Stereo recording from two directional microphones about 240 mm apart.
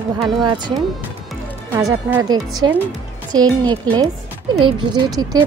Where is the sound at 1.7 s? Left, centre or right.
Centre.